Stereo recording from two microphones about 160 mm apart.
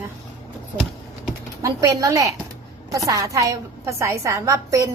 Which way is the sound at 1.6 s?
20° right (ahead or behind).